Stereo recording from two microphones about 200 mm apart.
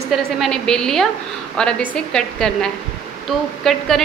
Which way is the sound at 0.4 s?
5° left (ahead or behind).